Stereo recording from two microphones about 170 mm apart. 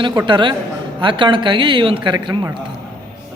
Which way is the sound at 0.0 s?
25° right (ahead or behind).